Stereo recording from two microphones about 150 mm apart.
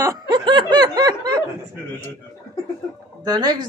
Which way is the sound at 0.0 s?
25° right (ahead or behind).